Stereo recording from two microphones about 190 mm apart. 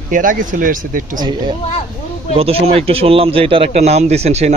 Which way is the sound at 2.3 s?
30° right (ahead or behind).